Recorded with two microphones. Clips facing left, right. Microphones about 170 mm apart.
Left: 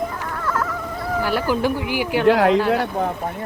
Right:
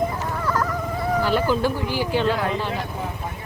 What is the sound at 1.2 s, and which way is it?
Speech, 10° left (ahead or behind).